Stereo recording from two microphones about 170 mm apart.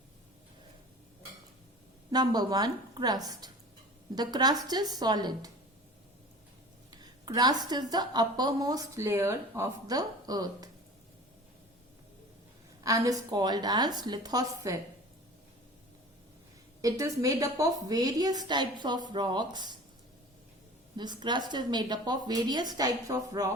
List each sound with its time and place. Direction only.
2.0 s a woman's voice: 25° right (ahead or behind)
6.9 s a woman's voice: 25° right (ahead or behind)
12.8 s a woman's voice: 20° right (ahead or behind)
16.8 s a woman's voice: 20° right (ahead or behind)
20.9 s a woman's voice: 25° right (ahead or behind)